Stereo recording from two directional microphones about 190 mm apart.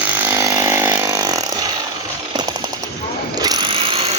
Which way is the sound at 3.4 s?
25° right (ahead or behind).